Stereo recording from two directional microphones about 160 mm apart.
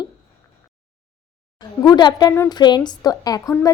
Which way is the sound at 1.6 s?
25° left (ahead or behind).